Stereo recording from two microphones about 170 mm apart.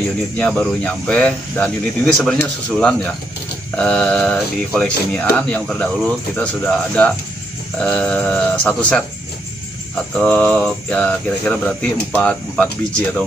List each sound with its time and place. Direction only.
0.4 s speech: 10° left (ahead or behind)
10.1 s speech: 5° left (ahead or behind)